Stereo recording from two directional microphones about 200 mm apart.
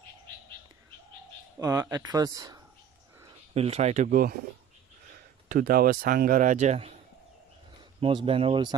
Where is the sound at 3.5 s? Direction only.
30° right (ahead or behind).